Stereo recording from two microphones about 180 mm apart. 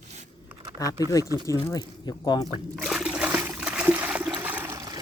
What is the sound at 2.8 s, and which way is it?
Trickle, centre (ahead or behind).